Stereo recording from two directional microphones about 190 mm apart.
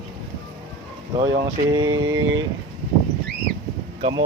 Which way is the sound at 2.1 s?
90° right.